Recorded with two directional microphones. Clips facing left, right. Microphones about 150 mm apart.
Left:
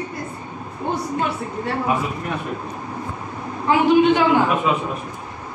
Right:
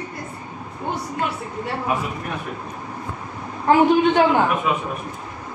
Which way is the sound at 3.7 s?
50° right (ahead or behind).